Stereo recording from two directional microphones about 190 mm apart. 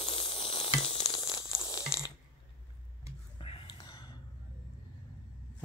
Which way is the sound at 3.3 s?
30° left (ahead or behind).